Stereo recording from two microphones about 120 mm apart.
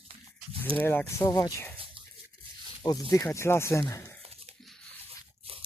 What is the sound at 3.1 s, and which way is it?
Speech, 25° left (ahead or behind).